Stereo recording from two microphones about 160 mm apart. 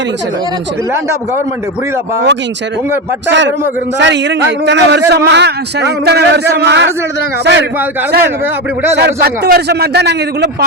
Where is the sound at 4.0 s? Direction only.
90° right.